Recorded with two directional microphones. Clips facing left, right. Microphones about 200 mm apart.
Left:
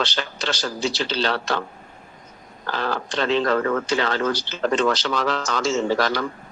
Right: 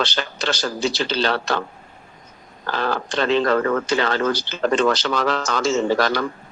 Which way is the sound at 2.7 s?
55° right (ahead or behind).